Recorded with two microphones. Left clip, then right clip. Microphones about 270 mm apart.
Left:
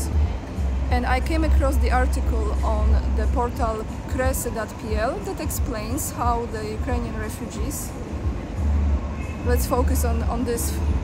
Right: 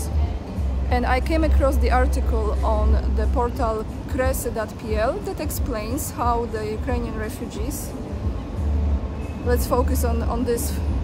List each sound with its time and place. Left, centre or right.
0.8 s speech: centre
9.5 s speech: centre